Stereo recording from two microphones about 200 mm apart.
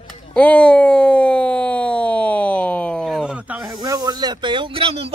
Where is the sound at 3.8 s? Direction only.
20° right (ahead or behind).